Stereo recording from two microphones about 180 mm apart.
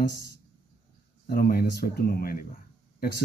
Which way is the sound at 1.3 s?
55° left (ahead or behind).